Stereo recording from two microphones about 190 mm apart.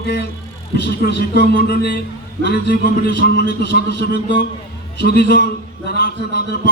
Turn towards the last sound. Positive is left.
turn(degrees=60)  # may be behind; listen again after turning